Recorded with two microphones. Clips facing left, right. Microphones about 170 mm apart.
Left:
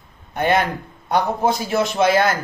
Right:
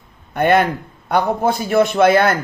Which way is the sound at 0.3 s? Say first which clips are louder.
Right 4 dB; 60° right (ahead or behind).